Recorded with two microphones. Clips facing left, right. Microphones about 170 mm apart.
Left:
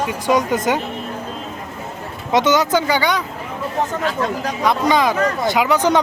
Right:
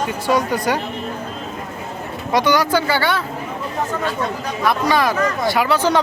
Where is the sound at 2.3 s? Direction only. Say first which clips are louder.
Left 1 dB; 20° left (ahead or behind).